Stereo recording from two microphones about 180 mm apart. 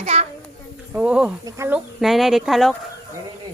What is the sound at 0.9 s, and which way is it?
Speech, 5° right (ahead or behind).